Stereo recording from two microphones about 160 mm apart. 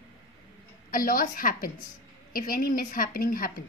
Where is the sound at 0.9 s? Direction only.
60° left (ahead or behind).